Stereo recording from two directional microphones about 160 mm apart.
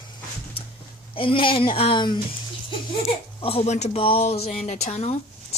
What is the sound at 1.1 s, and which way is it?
Speech, 35° left (ahead or behind).